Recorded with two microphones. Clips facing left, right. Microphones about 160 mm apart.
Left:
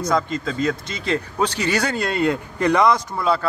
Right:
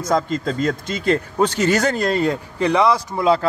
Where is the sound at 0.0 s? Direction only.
45° right (ahead or behind); by 2.9 s 25° right (ahead or behind).